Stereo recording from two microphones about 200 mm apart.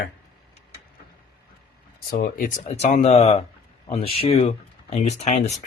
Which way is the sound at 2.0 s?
45° left (ahead or behind).